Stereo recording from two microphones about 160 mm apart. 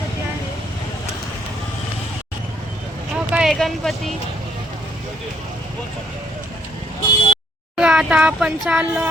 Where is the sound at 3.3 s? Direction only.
5° right (ahead or behind).